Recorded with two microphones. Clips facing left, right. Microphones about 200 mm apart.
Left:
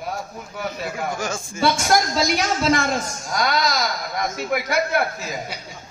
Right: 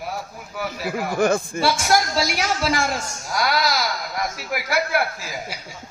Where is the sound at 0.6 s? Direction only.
5° right (ahead or behind).